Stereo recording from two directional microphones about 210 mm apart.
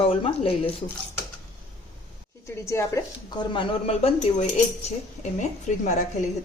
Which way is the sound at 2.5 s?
15° left (ahead or behind).